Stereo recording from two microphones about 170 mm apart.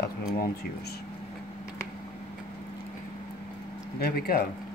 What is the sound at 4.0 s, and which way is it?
Speech, 65° left (ahead or behind).